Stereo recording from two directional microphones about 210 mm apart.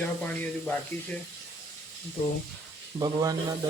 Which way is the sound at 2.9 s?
20° right (ahead or behind).